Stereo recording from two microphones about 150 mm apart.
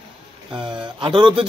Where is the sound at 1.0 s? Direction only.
35° right (ahead or behind).